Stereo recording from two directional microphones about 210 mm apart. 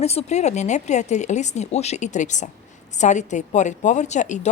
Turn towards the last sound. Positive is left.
turn(degrees=35)  # may be behind; listen again after turning